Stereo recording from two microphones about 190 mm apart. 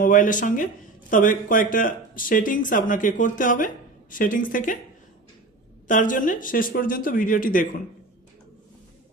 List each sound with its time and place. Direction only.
0.0 s speech: 45° left (ahead or behind)
5.9 s speech: 45° left (ahead or behind)